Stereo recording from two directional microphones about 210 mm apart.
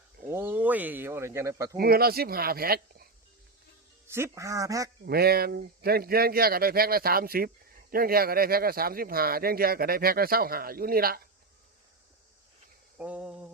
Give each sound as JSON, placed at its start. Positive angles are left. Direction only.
{"t": 0.3, "sound": "speech", "side_deg": -10}
{"t": 1.7, "sound": "speech", "side_deg": -45}
{"t": 4.0, "sound": "speech", "side_deg": -10}
{"t": 5.0, "sound": "speech", "side_deg": -45}
{"t": 13.0, "sound": "a sound", "side_deg": -5}